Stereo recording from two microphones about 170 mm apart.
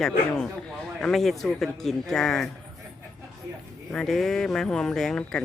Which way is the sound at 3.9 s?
Centre (ahead or behind).